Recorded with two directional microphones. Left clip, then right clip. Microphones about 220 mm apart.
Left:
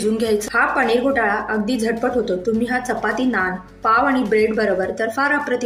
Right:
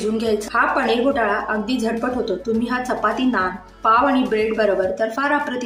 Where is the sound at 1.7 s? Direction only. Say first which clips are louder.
Left 2 dB; 10° left (ahead or behind).